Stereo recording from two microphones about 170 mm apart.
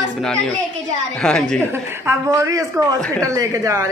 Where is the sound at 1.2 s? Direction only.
5° left (ahead or behind).